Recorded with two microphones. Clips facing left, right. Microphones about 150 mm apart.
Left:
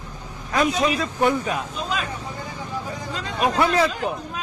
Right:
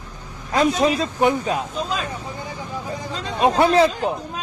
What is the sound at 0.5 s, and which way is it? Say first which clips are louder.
Speech: right 3 dB; 30° right (ahead or behind).